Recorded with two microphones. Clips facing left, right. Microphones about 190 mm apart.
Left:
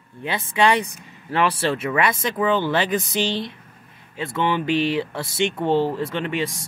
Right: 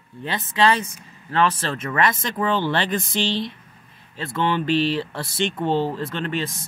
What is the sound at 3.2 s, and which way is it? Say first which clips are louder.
Speech: even; 50° left (ahead or behind).